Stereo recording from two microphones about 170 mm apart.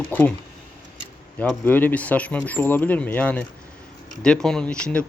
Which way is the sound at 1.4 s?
10° left (ahead or behind).